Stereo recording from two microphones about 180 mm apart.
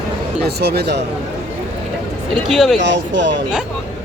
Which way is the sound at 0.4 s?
65° right (ahead or behind).